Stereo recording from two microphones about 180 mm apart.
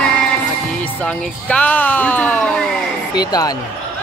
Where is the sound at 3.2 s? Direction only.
20° left (ahead or behind).